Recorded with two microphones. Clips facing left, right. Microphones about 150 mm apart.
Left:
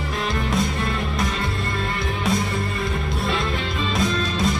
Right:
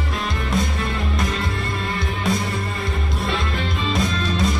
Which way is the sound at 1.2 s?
Centre (ahead or behind).